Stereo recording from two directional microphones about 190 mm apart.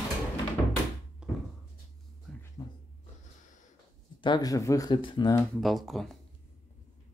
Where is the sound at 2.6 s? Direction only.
20° left (ahead or behind).